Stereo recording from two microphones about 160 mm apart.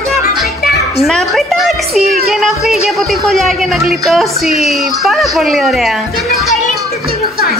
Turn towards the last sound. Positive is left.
turn(degrees=0)  # may be behind; listen again after turning